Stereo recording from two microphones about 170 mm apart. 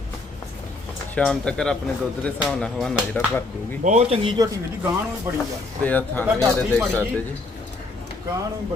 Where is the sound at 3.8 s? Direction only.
40° right (ahead or behind).